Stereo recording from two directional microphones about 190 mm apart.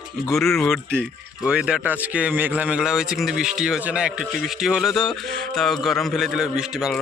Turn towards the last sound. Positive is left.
turn(degrees=-5)  # may be behind; listen again after turning